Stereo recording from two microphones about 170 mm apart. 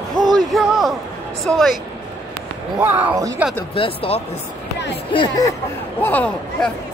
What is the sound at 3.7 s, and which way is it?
Speech, 30° left (ahead or behind).